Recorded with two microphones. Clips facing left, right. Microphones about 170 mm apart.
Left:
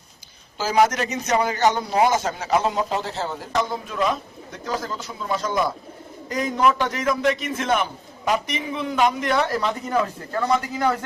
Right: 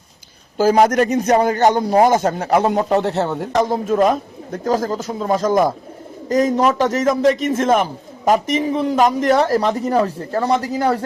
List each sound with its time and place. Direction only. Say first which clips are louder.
0.5 s a man's voice: right 6 dB; 50° right (ahead or behind)
3.5 s a man's voice: right 9 dB; 40° right (ahead or behind)